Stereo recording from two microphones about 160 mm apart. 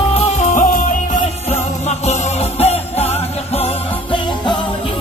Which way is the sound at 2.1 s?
40° left (ahead or behind).